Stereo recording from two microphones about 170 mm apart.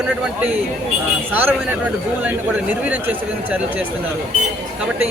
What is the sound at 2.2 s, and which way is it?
Speech, 10° right (ahead or behind).